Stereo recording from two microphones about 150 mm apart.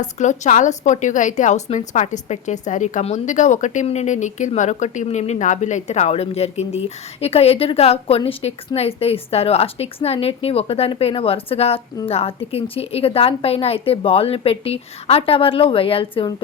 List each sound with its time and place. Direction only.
0.0 s a woman's voice: 55° left (ahead or behind); by 16.3 s 35° left (ahead or behind)